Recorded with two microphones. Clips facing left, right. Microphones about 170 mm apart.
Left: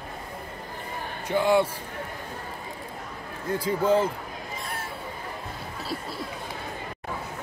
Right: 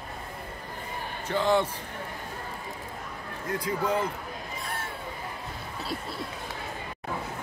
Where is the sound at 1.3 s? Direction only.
10° left (ahead or behind).